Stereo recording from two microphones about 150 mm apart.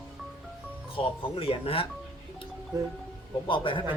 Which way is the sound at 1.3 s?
40° left (ahead or behind).